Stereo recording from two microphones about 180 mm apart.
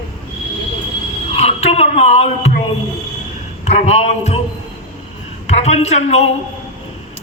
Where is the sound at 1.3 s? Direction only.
35° left (ahead or behind).